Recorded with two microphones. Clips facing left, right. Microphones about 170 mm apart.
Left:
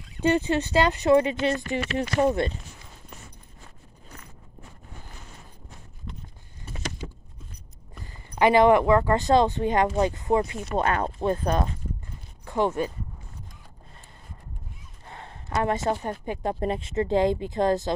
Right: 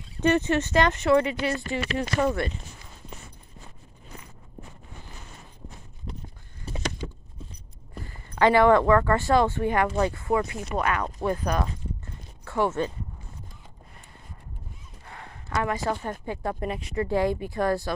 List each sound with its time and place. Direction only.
0.2 s speech: 15° left (ahead or behind)
8.0 s speech: 15° left (ahead or behind)
15.0 s speech: 25° left (ahead or behind)